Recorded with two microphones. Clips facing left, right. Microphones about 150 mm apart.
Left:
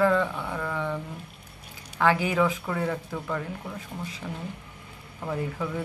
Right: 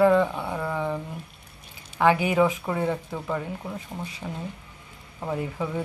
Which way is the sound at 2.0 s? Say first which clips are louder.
Right 3 dB; 10° right (ahead or behind).